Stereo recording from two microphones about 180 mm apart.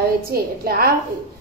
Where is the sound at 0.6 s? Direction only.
55° right (ahead or behind).